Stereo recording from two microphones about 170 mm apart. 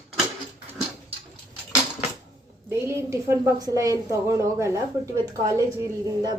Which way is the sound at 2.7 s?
15° right (ahead or behind).